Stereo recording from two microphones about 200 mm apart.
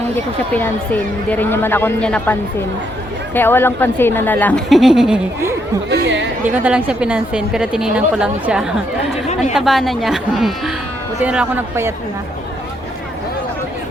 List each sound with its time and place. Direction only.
0.5 s a woman's voice: 10° left (ahead or behind); by 5.5 s 10° right (ahead or behind)
5.9 s speech: 65° right (ahead or behind)
6.4 s a woman's voice: 5° right (ahead or behind)